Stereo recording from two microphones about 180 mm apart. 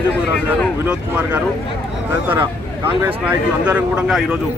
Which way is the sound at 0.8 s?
10° right (ahead or behind).